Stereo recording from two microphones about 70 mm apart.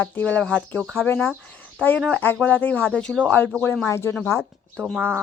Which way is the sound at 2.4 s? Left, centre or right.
Left.